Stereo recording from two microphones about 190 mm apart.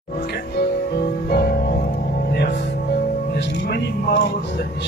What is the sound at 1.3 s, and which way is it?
Music, 55° left (ahead or behind).